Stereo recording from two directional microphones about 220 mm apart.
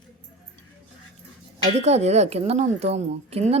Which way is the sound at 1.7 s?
30° right (ahead or behind).